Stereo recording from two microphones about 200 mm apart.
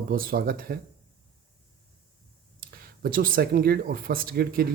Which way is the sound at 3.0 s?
45° right (ahead or behind).